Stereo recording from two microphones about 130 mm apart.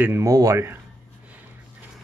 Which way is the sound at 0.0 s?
20° right (ahead or behind).